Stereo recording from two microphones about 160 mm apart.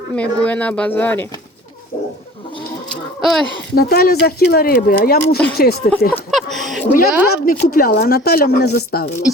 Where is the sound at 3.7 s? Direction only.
75° left (ahead or behind).